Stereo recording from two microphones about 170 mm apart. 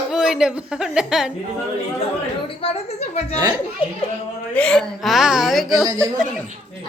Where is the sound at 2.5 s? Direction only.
35° left (ahead or behind).